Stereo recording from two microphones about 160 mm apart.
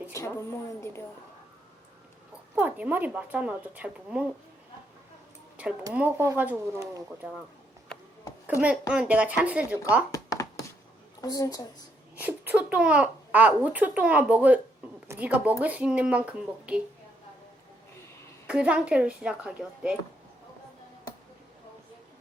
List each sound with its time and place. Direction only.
0.1 s a woman's voice: 15° left (ahead or behind)
2.6 s a child's voice: 10° right (ahead or behind)
5.9 s a child's voice: 10° right (ahead or behind)
8.4 s a child's voice: 10° right (ahead or behind)
10.1 s a sound: 20° left (ahead or behind)
11.2 s a woman's voice: 25° left (ahead or behind)
12.1 s a child's voice: 10° right (ahead or behind)
18.4 s a child's voice: 5° right (ahead or behind)